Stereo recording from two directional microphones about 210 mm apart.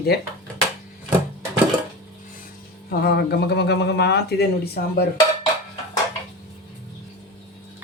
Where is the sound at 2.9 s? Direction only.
50° left (ahead or behind).